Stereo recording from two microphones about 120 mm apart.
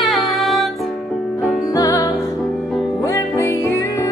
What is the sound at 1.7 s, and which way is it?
Music, 30° left (ahead or behind).